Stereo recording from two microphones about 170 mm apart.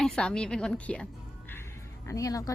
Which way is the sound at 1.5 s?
15° left (ahead or behind).